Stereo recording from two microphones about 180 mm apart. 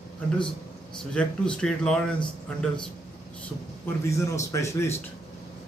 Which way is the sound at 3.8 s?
15° left (ahead or behind).